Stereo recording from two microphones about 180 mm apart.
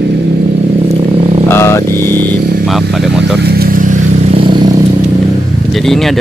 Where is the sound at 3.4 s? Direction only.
60° right (ahead or behind).